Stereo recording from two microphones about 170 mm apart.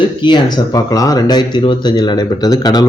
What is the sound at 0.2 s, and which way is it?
Speech, 30° left (ahead or behind).